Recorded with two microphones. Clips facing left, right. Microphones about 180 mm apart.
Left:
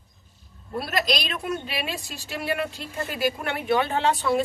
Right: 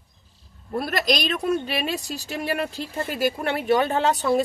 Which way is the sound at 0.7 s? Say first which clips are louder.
Right 2 dB; 45° right (ahead or behind).